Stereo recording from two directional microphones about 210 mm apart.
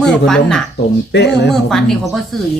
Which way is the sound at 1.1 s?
55° left (ahead or behind).